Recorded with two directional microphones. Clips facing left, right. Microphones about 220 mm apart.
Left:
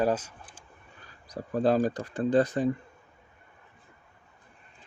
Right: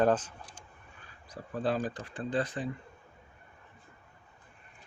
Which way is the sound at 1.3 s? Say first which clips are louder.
Left 7 dB; 40° left (ahead or behind).